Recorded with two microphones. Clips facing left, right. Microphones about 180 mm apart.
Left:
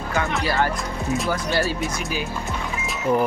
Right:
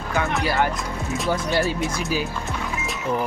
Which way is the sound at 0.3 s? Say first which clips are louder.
Right 1 dB; 15° right (ahead or behind).